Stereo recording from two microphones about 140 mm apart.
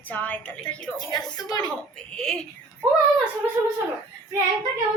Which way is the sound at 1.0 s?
30° left (ahead or behind).